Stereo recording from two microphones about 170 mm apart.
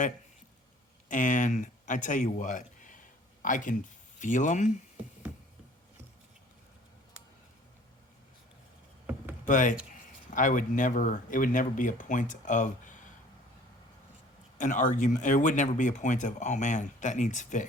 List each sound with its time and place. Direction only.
1.0 s speech: 50° left (ahead or behind)
9.5 s speech: 50° left (ahead or behind)
14.6 s speech: 50° left (ahead or behind)